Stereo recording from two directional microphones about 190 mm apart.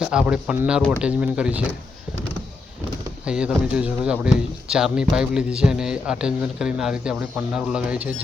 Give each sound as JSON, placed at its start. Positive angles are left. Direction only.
{"t": 0.0, "sound": "speech", "side_deg": -5}
{"t": 3.2, "sound": "speech", "side_deg": -5}